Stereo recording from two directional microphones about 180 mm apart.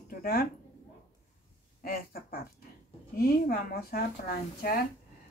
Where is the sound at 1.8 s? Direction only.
55° left (ahead or behind).